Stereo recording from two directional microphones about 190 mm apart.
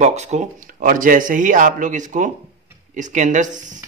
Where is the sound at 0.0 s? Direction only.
35° right (ahead or behind).